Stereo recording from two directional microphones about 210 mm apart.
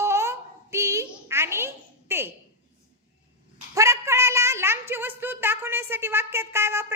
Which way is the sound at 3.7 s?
15° right (ahead or behind).